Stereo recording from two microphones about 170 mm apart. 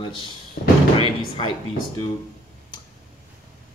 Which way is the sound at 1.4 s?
30° left (ahead or behind).